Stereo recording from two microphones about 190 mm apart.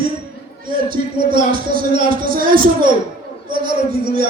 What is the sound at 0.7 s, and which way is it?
A man's voice, 50° right (ahead or behind).